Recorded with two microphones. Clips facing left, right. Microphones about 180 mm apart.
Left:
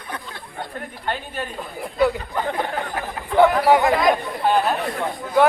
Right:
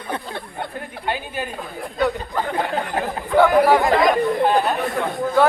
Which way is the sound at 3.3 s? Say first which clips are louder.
Right 1 dB; 20° left (ahead or behind).